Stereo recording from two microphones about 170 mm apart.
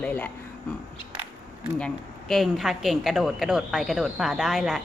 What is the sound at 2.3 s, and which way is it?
A woman's voice, centre (ahead or behind).